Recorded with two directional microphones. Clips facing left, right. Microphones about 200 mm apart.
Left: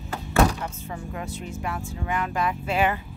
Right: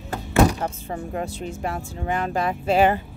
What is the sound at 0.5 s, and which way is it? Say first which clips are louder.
Speech: right 5 dB; 35° right (ahead or behind).